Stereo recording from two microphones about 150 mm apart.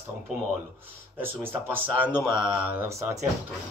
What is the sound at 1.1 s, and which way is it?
Speech, 15° right (ahead or behind).